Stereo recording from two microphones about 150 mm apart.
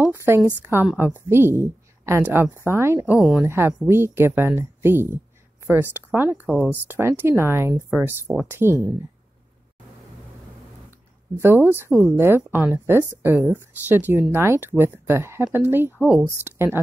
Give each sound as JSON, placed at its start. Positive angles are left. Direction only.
{"t": 0.0, "sound": "a woman's voice", "side_deg": -15}
{"t": 10.9, "sound": "a woman's voice", "side_deg": -15}